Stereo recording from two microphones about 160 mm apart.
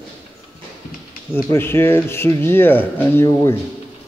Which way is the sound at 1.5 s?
15° left (ahead or behind).